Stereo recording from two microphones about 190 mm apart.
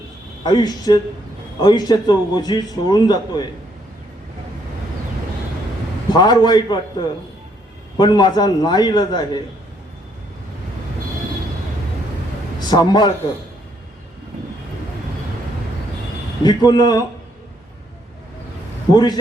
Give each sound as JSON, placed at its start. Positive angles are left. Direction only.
{"t": 0.4, "sound": "a man's voice", "side_deg": 20}
{"t": 6.1, "sound": "a man's voice", "side_deg": 20}
{"t": 12.5, "sound": "a man's voice", "side_deg": 20}
{"t": 16.4, "sound": "a man's voice", "side_deg": 20}
{"t": 18.9, "sound": "a man's voice", "side_deg": 20}